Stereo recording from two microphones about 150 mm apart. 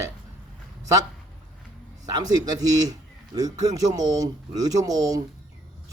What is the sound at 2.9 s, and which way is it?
A man's voice, 25° right (ahead or behind).